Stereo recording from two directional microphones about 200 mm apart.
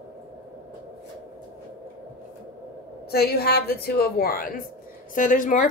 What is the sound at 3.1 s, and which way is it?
A woman's voice, 50° left (ahead or behind).